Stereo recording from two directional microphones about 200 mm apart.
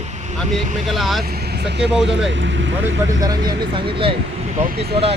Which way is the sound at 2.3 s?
65° right (ahead or behind).